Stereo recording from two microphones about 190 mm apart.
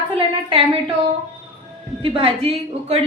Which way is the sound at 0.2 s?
30° right (ahead or behind).